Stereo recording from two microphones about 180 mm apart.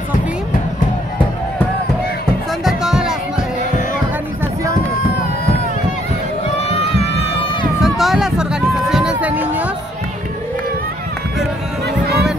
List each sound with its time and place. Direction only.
2.6 s music: 5° right (ahead or behind)
6.7 s run: 35° left (ahead or behind)
7.8 s a sound: centre (ahead or behind)